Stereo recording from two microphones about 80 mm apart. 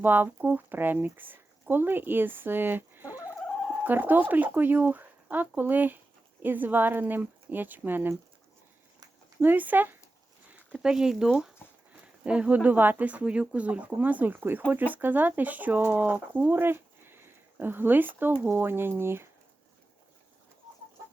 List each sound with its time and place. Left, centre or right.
0.0 s speech: right
9.4 s speech: right
10.5 s speech: centre; by 19.3 s right